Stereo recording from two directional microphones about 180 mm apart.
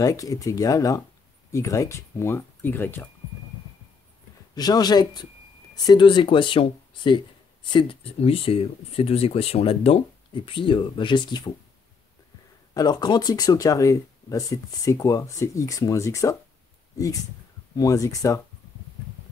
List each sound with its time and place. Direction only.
0.0 s speech: 20° left (ahead or behind)
4.6 s speech: 20° left (ahead or behind)
12.7 s speech: 20° left (ahead or behind)
17.7 s speech: 20° left (ahead or behind)